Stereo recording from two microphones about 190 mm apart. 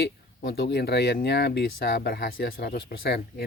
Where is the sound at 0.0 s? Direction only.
60° left (ahead or behind).